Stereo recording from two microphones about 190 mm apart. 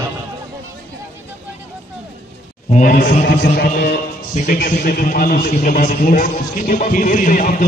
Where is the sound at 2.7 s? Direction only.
45° left (ahead or behind).